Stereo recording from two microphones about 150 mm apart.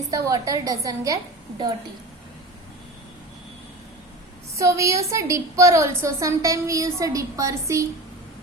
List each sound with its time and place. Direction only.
0.1 s a woman's voice: 20° right (ahead or behind)
4.5 s a woman's voice: 20° right (ahead or behind)